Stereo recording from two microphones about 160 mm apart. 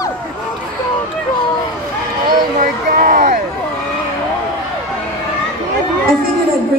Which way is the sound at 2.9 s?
60° right (ahead or behind).